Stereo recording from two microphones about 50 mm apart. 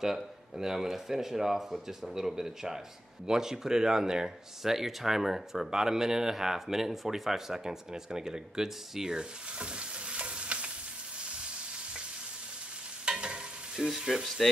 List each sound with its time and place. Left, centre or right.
0.0 s speech: centre
11.2 s frying: right
13.0 s stir: centre
13.8 s speech: centre